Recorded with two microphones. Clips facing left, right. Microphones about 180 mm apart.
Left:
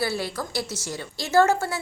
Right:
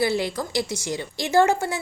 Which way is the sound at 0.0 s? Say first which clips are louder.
Right 4 dB; 20° right (ahead or behind).